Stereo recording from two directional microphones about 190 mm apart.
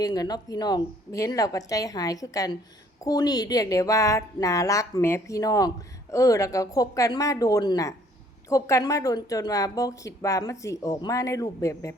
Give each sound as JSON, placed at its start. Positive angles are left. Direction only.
{"t": 0.0, "sound": "a woman's voice", "side_deg": 20}